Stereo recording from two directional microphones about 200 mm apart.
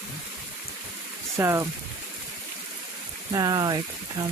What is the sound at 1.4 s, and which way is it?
Speech, 15° right (ahead or behind).